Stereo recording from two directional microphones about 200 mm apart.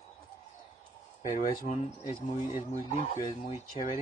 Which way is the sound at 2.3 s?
35° left (ahead or behind).